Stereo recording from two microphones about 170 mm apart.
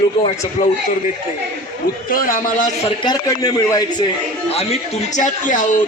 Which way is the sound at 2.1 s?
55° left (ahead or behind).